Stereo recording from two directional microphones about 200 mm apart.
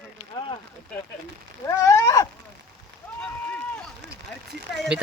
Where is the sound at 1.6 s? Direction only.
15° left (ahead or behind).